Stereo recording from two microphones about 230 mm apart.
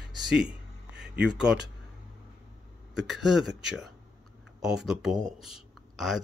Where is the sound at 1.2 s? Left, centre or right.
Centre.